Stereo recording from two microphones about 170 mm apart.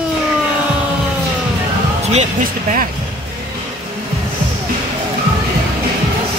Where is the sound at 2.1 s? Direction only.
45° right (ahead or behind).